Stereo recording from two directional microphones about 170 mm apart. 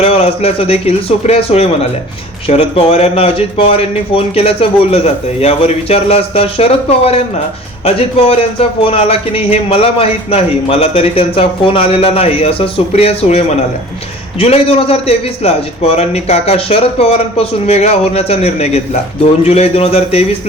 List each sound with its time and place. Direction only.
0.0 s a man's voice: 35° left (ahead or behind)